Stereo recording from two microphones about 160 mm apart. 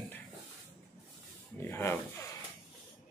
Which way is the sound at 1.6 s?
15° left (ahead or behind).